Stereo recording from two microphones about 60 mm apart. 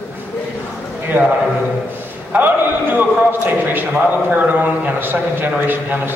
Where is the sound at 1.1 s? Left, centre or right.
Right.